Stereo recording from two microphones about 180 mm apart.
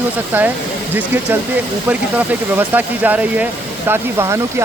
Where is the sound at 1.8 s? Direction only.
10° right (ahead or behind).